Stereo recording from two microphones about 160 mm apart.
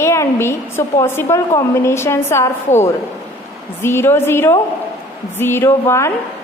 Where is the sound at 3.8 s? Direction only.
15° left (ahead or behind).